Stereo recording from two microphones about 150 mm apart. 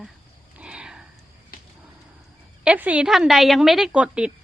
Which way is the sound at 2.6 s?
10° right (ahead or behind).